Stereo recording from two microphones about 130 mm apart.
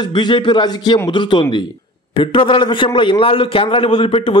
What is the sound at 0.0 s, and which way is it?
A man's voice, 35° left (ahead or behind).